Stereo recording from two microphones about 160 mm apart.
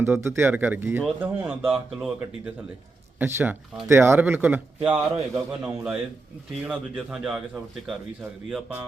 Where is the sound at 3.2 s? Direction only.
15° right (ahead or behind).